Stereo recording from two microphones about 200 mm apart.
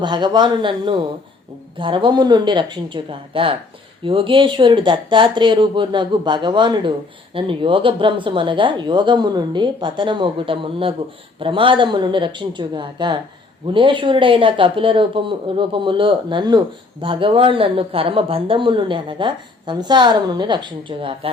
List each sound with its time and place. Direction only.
0.0 s speech: 20° right (ahead or behind)